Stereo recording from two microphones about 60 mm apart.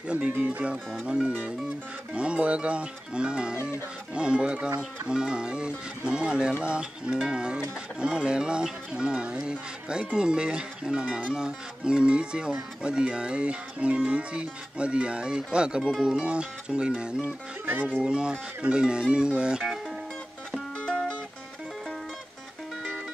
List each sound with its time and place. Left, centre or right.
0.4 s speech: right
17.2 s speech: right
18.0 s speech: centre
20.5 s music: centre